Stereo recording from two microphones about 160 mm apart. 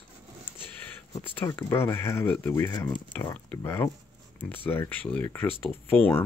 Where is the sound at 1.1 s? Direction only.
10° left (ahead or behind).